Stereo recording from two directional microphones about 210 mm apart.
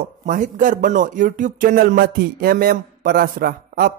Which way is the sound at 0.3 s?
40° right (ahead or behind).